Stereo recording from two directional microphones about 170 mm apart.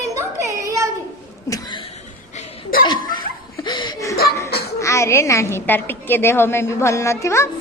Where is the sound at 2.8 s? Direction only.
25° left (ahead or behind).